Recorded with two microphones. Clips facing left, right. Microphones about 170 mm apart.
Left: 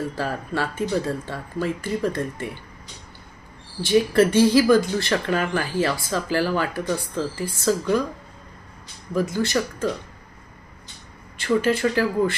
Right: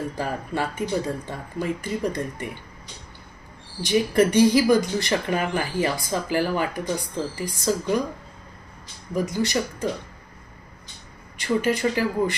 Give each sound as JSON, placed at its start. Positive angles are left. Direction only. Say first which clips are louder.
{"t": 0.2, "sound": "speech", "louder": "right 1 dB", "side_deg": -15}
{"t": 3.8, "sound": "speech", "louder": "left 2 dB", "side_deg": -15}
{"t": 9.1, "sound": "speech", "louder": "left 1 dB", "side_deg": -15}
{"t": 11.3, "sound": "speech", "louder": "left 2 dB", "side_deg": -15}